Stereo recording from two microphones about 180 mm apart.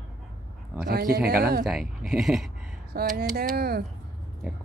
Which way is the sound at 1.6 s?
Centre (ahead or behind).